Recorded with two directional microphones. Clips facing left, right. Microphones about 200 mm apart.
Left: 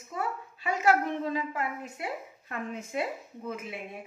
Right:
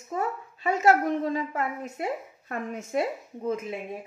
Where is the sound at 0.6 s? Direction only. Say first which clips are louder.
Right 4 dB; 40° right (ahead or behind).